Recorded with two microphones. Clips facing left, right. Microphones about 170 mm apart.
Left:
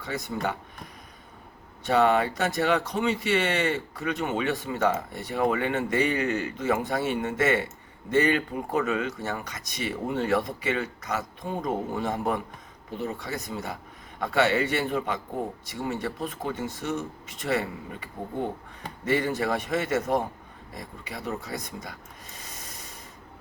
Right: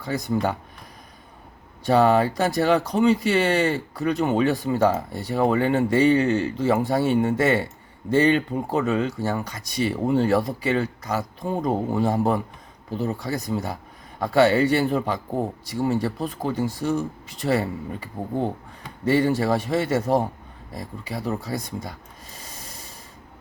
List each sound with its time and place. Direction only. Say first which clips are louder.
0.0 s speech: right 6 dB; 35° right (ahead or behind)
1.8 s speech: right 4 dB; 35° right (ahead or behind)